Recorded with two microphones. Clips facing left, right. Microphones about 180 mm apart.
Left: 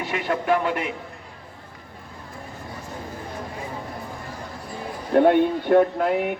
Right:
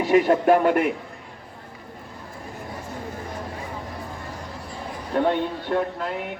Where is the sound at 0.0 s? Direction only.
40° right (ahead or behind).